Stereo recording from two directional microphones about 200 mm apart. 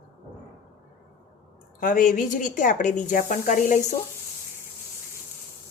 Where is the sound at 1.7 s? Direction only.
40° left (ahead or behind).